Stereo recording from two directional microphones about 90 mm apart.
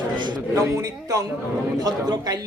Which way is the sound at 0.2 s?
60° right (ahead or behind).